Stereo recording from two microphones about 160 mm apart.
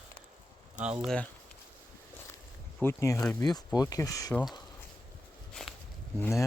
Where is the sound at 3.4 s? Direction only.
25° left (ahead or behind).